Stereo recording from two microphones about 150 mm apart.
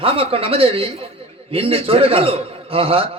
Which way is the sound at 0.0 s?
40° right (ahead or behind).